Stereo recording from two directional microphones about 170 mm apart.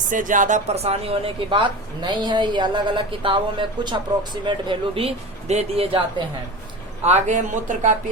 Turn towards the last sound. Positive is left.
turn(degrees=-45)  # may be behind; listen again after turning